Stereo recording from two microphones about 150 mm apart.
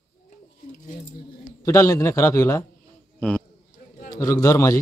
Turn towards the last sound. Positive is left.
turn(degrees=25)  # may be behind; listen again after turning